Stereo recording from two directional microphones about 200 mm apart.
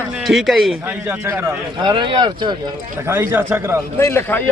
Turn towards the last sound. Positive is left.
turn(degrees=10)  # may be behind; listen again after turning